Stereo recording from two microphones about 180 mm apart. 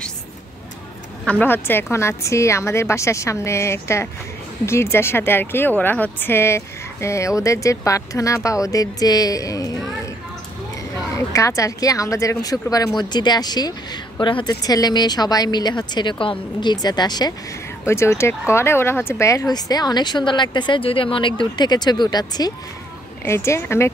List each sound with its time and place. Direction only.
1.2 s speech: 10° left (ahead or behind)
11.3 s speech: 15° left (ahead or behind)